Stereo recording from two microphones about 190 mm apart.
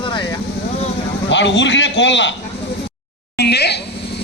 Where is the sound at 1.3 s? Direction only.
70° left (ahead or behind).